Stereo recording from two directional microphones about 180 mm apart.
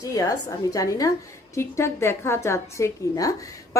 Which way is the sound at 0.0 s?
20° left (ahead or behind).